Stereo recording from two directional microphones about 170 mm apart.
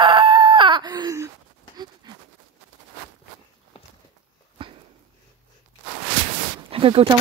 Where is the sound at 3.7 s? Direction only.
35° left (ahead or behind).